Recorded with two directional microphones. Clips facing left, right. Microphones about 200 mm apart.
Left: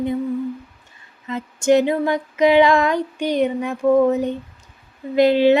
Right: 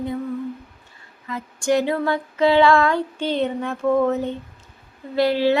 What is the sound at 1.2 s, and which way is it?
Female singing, 20° left (ahead or behind).